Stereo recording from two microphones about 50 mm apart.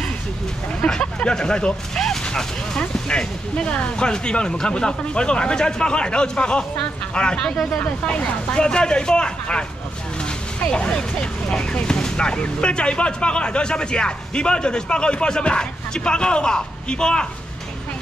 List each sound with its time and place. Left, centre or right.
0.7 s speech: centre